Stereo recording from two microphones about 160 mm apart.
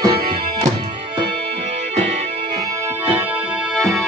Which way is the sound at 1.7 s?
40° right (ahead or behind).